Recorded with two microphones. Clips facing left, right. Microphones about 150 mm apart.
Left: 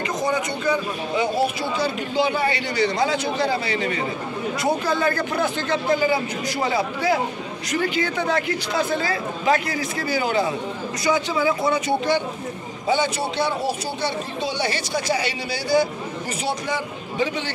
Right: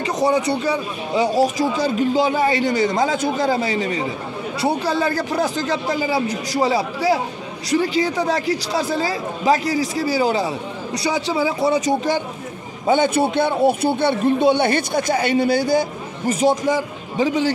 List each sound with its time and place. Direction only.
0.2 s a man's voice: 35° right (ahead or behind)
4.6 s a man's voice: 35° right (ahead or behind)
12.8 s a man's voice: 50° right (ahead or behind)